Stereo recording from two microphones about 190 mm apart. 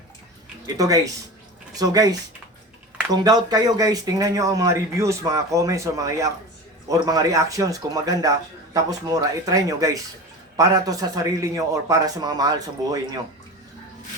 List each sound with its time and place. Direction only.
0.8 s a man's voice: 15° right (ahead or behind)